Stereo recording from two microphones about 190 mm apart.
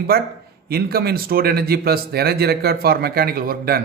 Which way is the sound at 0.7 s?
55° right (ahead or behind).